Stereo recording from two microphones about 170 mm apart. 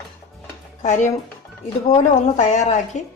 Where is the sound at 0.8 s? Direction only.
45° left (ahead or behind).